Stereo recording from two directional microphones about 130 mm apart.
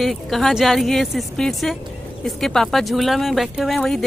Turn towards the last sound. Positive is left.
turn(degrees=0)  # may be behind; listen again after turning